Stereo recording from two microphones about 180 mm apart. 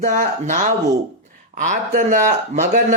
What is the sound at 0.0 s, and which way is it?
A man's voice, 45° right (ahead or behind).